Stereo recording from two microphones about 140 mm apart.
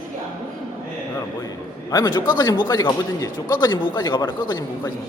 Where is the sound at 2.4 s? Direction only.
30° left (ahead or behind).